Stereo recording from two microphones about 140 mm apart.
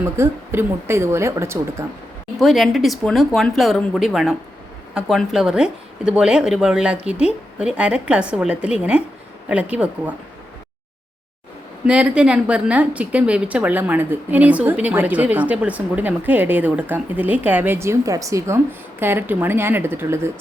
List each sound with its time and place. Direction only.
0.0 s speech: 20° right (ahead or behind)
2.4 s a woman's voice: centre (ahead or behind)
11.9 s a woman's voice: 10° right (ahead or behind)